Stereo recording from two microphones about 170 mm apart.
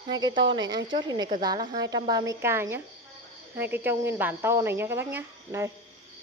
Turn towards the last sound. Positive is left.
turn(degrees=-15)  # may be behind; listen again after turning